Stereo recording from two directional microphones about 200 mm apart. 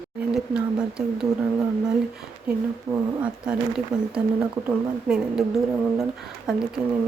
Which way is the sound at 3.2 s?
5° right (ahead or behind).